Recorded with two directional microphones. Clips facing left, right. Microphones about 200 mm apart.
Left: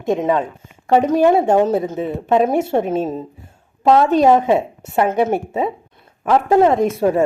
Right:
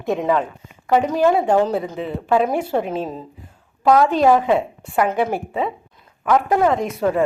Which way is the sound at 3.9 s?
25° left (ahead or behind).